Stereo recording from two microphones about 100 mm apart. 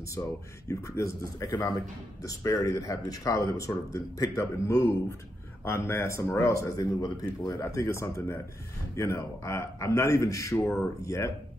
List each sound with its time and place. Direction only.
0.2 s a man's voice: 25° left (ahead or behind)